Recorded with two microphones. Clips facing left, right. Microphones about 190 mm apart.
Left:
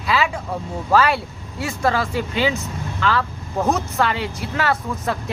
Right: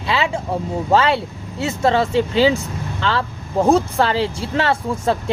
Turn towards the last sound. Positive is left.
turn(degrees=-25)  # may be behind; listen again after turning